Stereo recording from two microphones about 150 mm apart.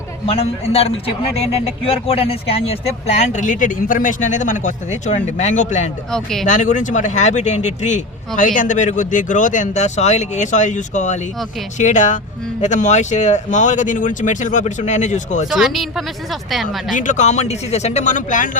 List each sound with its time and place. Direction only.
0.3 s a man's voice: 40° left (ahead or behind)
6.1 s speech: 5° left (ahead or behind)
6.4 s a man's voice: 55° left (ahead or behind)
15.4 s speech: centre (ahead or behind)
16.9 s a man's voice: 60° left (ahead or behind)